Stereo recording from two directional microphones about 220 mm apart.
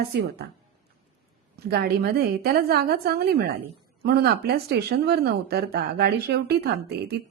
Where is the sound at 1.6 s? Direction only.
45° right (ahead or behind).